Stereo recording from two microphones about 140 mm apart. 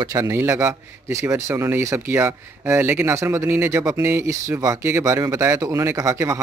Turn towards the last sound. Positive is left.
turn(degrees=-20)  # may be behind; listen again after turning